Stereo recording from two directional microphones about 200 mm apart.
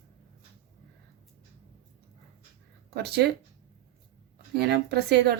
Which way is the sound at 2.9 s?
55° right (ahead or behind).